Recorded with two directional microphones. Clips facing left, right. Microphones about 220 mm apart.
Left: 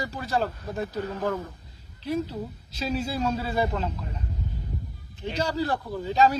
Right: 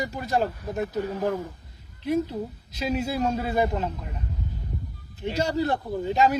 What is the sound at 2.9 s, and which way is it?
A man's voice, 15° right (ahead or behind).